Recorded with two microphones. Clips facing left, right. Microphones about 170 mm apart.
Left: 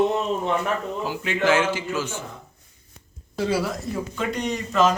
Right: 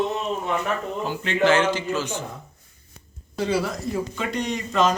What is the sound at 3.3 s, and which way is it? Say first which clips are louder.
Speech: even; centre (ahead or behind).